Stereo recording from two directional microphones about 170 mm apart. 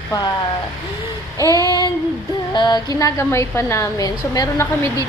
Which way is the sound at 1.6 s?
25° left (ahead or behind).